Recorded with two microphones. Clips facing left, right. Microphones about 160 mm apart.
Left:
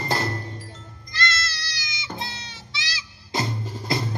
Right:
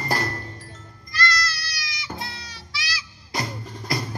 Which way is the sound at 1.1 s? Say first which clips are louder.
Right 2 dB; 25° left (ahead or behind).